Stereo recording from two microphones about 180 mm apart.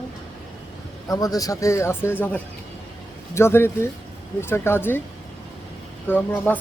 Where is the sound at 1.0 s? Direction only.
20° left (ahead or behind).